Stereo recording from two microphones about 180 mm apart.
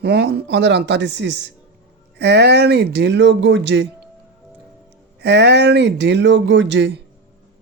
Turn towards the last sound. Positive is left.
turn(degrees=-80)